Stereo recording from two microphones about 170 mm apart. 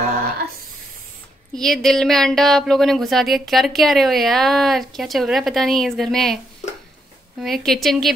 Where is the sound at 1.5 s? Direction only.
5° left (ahead or behind).